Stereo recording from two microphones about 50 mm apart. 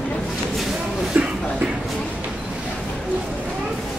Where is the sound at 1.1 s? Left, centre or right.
Right.